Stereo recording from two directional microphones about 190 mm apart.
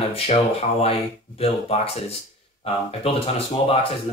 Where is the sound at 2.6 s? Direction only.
30° left (ahead or behind).